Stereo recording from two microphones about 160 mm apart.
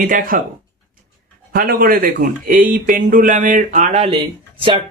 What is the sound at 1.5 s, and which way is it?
Speech, 65° right (ahead or behind).